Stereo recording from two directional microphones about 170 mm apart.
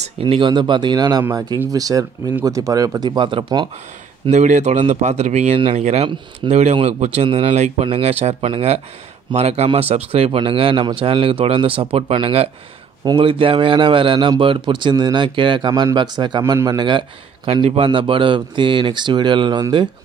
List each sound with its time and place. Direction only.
0.0 s speech: 30° right (ahead or behind)
4.3 s a man's voice: 40° right (ahead or behind); by 19.9 s 25° right (ahead or behind)